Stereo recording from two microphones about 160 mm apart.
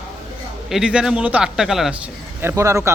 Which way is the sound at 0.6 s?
5° right (ahead or behind).